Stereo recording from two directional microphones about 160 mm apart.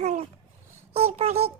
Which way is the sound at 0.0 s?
45° right (ahead or behind).